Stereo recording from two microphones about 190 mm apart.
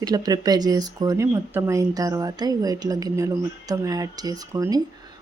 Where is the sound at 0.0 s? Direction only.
20° right (ahead or behind).